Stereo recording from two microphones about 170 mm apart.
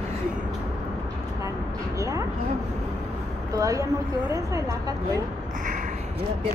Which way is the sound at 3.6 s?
20° right (ahead or behind).